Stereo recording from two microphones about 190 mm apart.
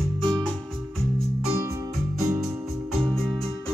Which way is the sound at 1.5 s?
15° right (ahead or behind).